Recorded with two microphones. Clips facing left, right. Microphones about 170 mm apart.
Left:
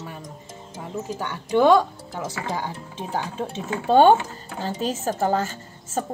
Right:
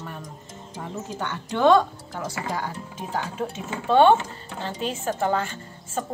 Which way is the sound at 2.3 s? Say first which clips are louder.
Even; 20° left (ahead or behind).